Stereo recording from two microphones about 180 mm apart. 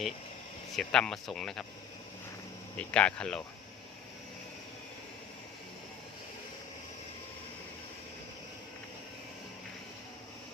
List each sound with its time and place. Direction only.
0.8 s speech: 5° left (ahead or behind)
2.7 s speech: 5° left (ahead or behind)